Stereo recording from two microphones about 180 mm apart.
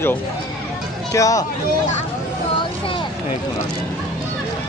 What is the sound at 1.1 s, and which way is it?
Speech, 20° left (ahead or behind).